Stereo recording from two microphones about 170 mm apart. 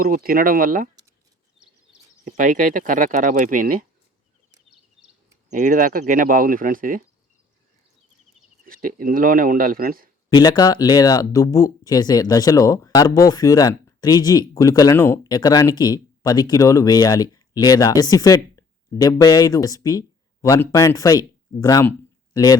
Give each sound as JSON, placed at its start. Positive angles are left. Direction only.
{"t": 0.0, "sound": "speech", "side_deg": -60}
{"t": 2.2, "sound": "speech", "side_deg": -50}
{"t": 4.7, "sound": "a sound", "side_deg": -5}
{"t": 5.5, "sound": "speech", "side_deg": -50}
{"t": 8.6, "sound": "speech", "side_deg": -55}
{"t": 10.2, "sound": "speech", "side_deg": 25}